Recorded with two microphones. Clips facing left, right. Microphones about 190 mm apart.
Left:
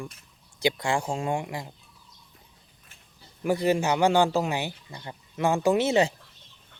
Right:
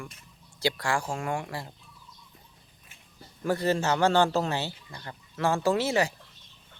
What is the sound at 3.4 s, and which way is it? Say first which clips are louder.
Speech: left 2 dB; 15° left (ahead or behind).